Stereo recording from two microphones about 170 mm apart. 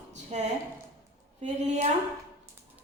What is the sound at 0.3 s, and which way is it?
A woman's voice, 40° right (ahead or behind).